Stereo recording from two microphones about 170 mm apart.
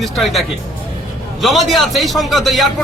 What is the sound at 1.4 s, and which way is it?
Speech, centre (ahead or behind).